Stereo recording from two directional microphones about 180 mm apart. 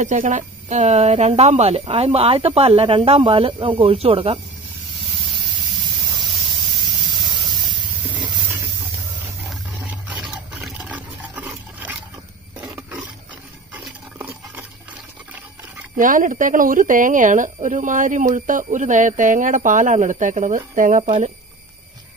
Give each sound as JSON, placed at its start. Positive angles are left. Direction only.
{"t": 0.0, "sound": "speech", "side_deg": -45}
{"t": 6.3, "sound": "spray", "side_deg": 0}
{"t": 9.5, "sound": "roar", "side_deg": -10}
{"t": 10.2, "sound": "a sound", "side_deg": -5}
{"t": 12.5, "sound": "roaring cats", "side_deg": -15}
{"t": 13.7, "sound": "a sound", "side_deg": -10}
{"t": 16.0, "sound": "speech", "side_deg": -45}